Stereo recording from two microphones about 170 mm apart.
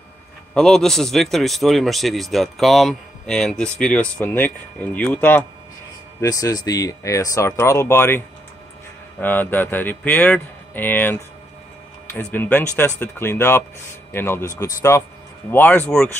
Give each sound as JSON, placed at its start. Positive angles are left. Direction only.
{"t": 0.6, "sound": "a man's voice", "side_deg": 5}
{"t": 9.2, "sound": "speech", "side_deg": 10}